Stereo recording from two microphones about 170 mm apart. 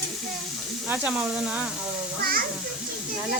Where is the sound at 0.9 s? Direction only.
10° right (ahead or behind).